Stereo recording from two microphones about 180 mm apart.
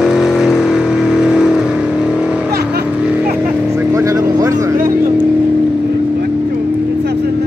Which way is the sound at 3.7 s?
15° right (ahead or behind).